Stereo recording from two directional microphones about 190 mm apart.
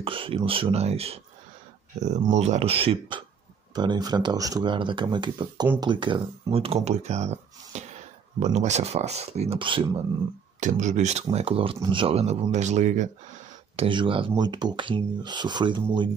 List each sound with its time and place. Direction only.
0.0 s speech: 30° right (ahead or behind)
10.6 s speech: 40° right (ahead or behind)
13.7 s speech: 25° right (ahead or behind)